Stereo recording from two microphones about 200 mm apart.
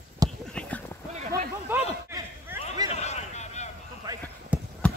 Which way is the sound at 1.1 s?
40° right (ahead or behind).